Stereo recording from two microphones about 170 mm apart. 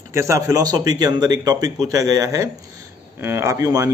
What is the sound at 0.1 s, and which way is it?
A man's voice, 15° right (ahead or behind).